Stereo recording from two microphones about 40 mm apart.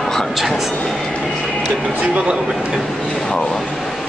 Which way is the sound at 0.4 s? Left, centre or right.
Centre.